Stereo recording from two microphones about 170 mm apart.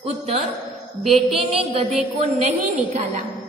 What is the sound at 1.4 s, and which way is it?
Speech, 35° right (ahead or behind).